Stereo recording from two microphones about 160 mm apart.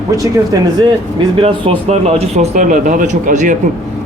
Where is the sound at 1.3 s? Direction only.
35° right (ahead or behind).